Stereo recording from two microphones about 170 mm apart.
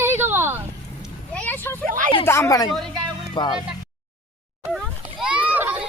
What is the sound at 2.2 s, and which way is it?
Speech, 15° left (ahead or behind).